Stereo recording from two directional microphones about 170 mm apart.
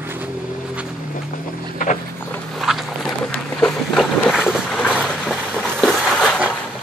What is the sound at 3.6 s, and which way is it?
Vehicle, centre (ahead or behind).